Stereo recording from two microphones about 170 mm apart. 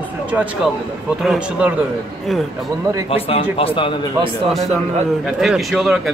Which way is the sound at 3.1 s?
35° left (ahead or behind).